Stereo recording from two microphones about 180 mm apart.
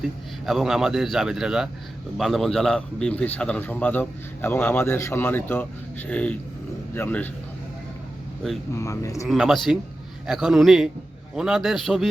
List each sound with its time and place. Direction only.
0.0 s a man's voice: centre (ahead or behind)
8.7 s a man's voice: 15° left (ahead or behind)
9.2 s a man's voice: centre (ahead or behind)